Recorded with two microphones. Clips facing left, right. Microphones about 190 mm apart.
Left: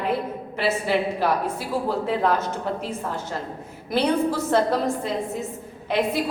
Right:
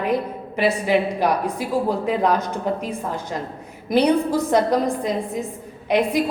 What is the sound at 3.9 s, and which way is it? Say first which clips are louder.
A woman's voice: right 4 dB; 15° right (ahead or behind).